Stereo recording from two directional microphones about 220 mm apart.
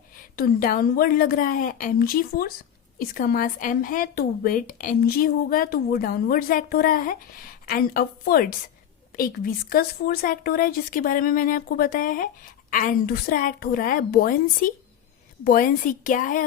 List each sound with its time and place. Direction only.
0.3 s speech: 40° left (ahead or behind)